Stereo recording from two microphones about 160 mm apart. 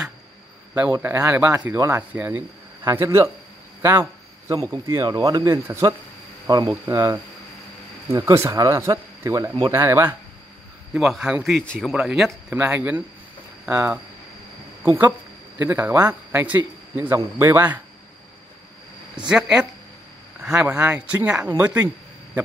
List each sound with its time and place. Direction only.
1.0 s speech: 10° right (ahead or behind)
10.9 s speech: centre (ahead or behind)
19.1 s speech: 5° right (ahead or behind)
20.4 s speech: 5° right (ahead or behind)
21.5 s a sound: 10° right (ahead or behind)